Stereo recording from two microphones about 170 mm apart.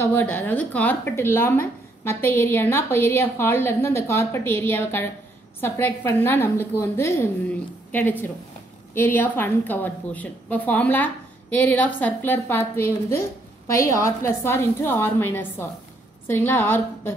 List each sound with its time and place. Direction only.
0.0 s a woman's voice: 10° left (ahead or behind)